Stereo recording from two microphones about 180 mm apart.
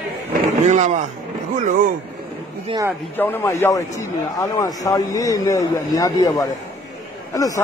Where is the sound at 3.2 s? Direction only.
15° left (ahead or behind).